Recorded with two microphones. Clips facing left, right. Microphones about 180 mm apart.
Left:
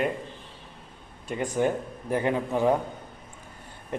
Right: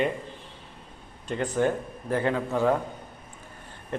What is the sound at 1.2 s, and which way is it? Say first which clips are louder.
A man's voice: even; 10° left (ahead or behind).